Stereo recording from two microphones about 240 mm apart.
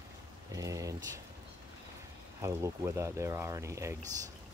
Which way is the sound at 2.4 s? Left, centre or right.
Centre.